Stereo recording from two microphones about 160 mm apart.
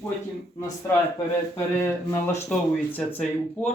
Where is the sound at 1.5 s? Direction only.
15° left (ahead or behind).